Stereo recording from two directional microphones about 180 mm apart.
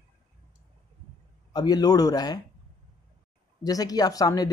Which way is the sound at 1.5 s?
20° left (ahead or behind).